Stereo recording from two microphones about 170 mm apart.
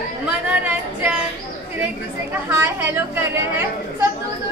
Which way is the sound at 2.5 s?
15° right (ahead or behind).